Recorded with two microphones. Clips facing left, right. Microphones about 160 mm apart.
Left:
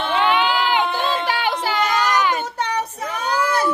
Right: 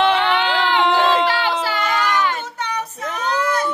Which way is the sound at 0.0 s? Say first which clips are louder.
Right 2 dB; 90° right.